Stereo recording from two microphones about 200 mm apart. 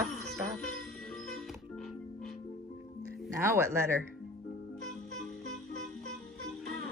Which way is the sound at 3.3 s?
15° right (ahead or behind).